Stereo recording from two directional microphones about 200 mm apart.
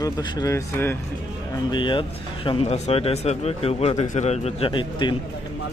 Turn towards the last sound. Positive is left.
turn(degrees=25)  # may be behind; listen again after turning